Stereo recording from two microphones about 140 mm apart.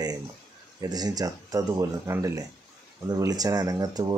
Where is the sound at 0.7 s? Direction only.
30° right (ahead or behind).